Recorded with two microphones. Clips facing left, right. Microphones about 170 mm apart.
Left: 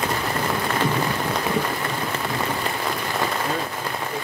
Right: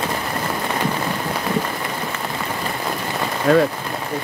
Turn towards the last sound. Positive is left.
turn(degrees=-75)  # may be behind; listen again after turning